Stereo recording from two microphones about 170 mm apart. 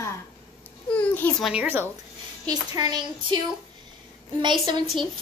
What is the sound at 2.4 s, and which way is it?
Speech, 25° right (ahead or behind).